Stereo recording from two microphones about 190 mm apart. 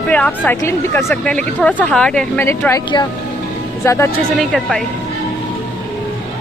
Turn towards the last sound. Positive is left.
turn(degrees=0)  # may be behind; listen again after turning